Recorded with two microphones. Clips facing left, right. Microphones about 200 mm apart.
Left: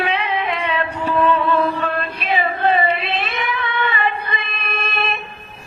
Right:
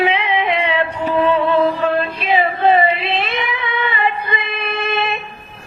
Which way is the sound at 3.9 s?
25° right (ahead or behind).